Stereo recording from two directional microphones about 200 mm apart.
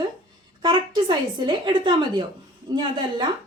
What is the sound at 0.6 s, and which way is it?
Speech, 25° right (ahead or behind).